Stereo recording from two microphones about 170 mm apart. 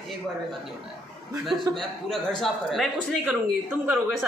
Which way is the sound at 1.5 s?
Centre (ahead or behind).